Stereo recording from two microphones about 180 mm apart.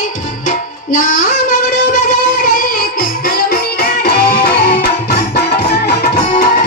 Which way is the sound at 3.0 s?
55° left (ahead or behind).